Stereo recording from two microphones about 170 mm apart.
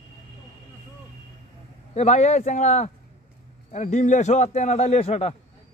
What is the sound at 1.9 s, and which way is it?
A man's voice, 40° left (ahead or behind).